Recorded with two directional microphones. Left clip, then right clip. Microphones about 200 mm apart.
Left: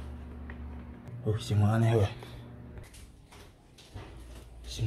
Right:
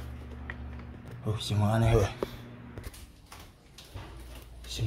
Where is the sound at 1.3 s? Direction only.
Centre (ahead or behind).